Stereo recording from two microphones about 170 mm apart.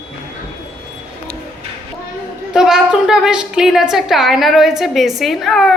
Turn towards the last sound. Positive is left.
turn(degrees=0)  # may be behind; listen again after turning